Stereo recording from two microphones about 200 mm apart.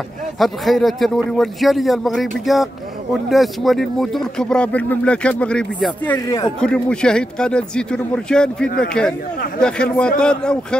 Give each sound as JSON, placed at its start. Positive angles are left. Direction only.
{"t": 0.4, "sound": "speech", "side_deg": 0}
{"t": 6.1, "sound": "speech", "side_deg": 20}
{"t": 6.6, "sound": "speech", "side_deg": 5}